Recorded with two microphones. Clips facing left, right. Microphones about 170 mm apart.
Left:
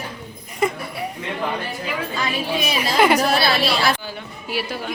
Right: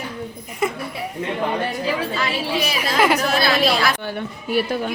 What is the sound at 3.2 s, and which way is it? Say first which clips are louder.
Speech: even; 35° left (ahead or behind).